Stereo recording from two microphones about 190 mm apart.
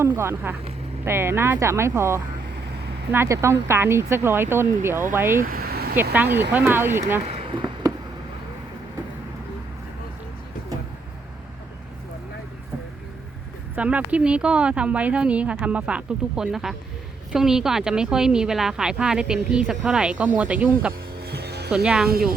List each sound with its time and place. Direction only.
0.0 s speech: 15° right (ahead or behind)
5.4 s vehicle: 50° right (ahead or behind)
6.0 s speech: 10° right (ahead or behind)
7.3 s a sound: 30° right (ahead or behind)
13.7 s speech: 5° right (ahead or behind)
21.2 s music: 60° right (ahead or behind)
21.8 s speech: 5° right (ahead or behind)